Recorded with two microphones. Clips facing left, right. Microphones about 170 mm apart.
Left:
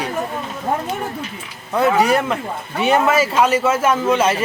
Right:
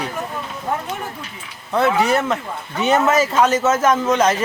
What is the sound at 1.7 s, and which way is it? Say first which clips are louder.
A man's voice: left 1 dB; 10° left (ahead or behind).